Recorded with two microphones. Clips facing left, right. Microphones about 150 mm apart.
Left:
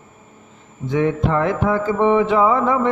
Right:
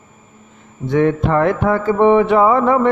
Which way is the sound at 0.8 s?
60° right (ahead or behind).